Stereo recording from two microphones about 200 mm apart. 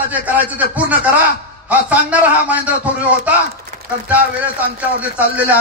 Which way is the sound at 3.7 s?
40° right (ahead or behind).